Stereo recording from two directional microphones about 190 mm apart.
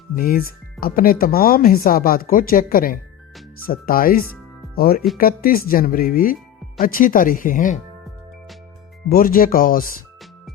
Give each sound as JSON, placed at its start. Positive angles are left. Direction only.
{"t": 0.2, "sound": "speech", "side_deg": 50}
{"t": 9.0, "sound": "speech", "side_deg": 50}